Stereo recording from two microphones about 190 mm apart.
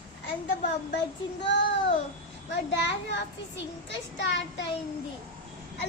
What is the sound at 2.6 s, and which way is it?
A child's voice, 65° left (ahead or behind).